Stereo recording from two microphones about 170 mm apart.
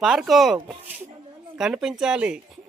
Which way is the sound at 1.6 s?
5° right (ahead or behind).